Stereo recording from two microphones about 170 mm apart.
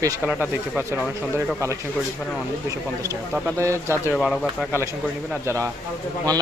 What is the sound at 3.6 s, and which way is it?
Speech, 15° right (ahead or behind).